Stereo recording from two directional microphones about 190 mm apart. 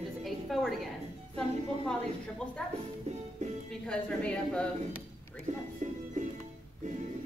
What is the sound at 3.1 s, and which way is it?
Music, 35° right (ahead or behind).